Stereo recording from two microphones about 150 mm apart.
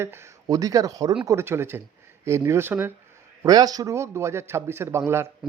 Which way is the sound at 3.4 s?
25° right (ahead or behind).